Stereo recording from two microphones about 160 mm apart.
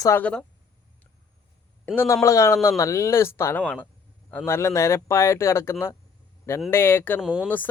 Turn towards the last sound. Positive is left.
turn(degrees=10)  # may be behind; listen again after turning